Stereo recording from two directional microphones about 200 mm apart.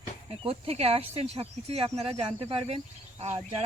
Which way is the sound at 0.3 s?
30° right (ahead or behind).